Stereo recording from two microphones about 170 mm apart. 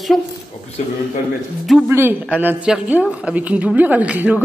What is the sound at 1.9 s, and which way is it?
A woman's voice, 15° right (ahead or behind).